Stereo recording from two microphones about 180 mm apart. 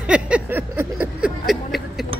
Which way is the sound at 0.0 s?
5° right (ahead or behind).